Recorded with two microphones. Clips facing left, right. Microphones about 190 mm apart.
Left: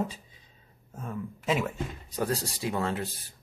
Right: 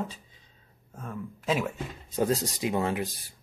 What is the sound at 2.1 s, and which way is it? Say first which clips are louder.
Speech: right 5 dB; 20° right (ahead or behind).